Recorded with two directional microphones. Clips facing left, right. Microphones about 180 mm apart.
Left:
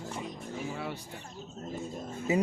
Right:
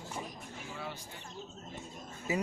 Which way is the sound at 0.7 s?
60° left (ahead or behind).